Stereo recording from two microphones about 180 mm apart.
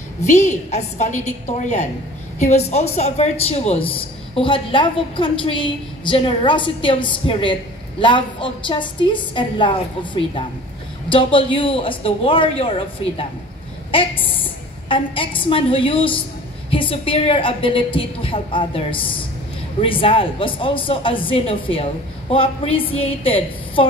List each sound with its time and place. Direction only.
0.2 s a woman's voice: 40° left (ahead or behind)
11.1 s a woman's voice: 30° left (ahead or behind)